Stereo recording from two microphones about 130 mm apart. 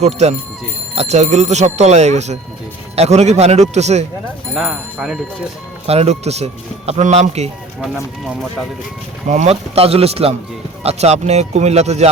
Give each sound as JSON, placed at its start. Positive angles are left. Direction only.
{"t": 0.0, "sound": "speech", "side_deg": -60}
{"t": 4.5, "sound": "speech", "side_deg": -5}
{"t": 5.8, "sound": "speech", "side_deg": -50}
{"t": 7.8, "sound": "speech", "side_deg": 0}
{"t": 9.2, "sound": "speech", "side_deg": -60}